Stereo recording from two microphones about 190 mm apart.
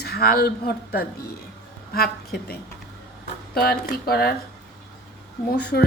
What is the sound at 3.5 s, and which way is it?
Speech, 55° left (ahead or behind).